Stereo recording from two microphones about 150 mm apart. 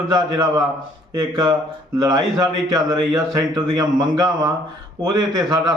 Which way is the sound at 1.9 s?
25° right (ahead or behind).